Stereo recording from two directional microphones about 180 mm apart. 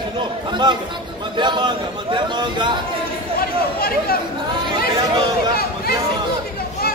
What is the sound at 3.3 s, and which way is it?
Speech, 55° left (ahead or behind).